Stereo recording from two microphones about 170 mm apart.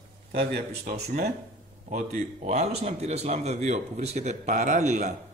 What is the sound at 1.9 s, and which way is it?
A man's voice, 45° right (ahead or behind).